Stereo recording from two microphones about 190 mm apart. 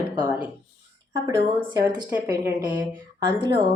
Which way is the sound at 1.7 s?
20° right (ahead or behind).